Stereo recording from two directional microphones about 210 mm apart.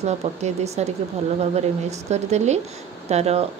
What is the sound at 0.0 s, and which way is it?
Speech, 30° right (ahead or behind).